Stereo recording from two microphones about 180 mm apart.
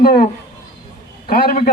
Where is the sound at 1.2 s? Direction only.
55° left (ahead or behind).